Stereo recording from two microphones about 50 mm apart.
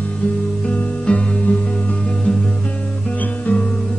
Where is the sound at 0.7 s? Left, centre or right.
Left.